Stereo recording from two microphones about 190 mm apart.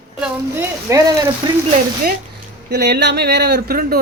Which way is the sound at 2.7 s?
60° right (ahead or behind).